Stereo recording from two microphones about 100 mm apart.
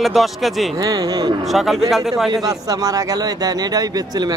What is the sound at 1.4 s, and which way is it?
Speech, centre (ahead or behind).